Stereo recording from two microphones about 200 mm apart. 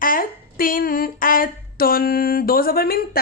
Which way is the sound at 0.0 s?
45° left (ahead or behind).